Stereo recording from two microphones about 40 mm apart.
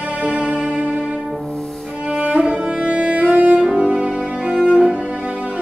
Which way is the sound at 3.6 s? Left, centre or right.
Right.